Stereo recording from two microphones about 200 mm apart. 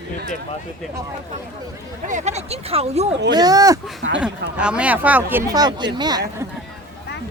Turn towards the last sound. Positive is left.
turn(degrees=-20)  # may be behind; listen again after turning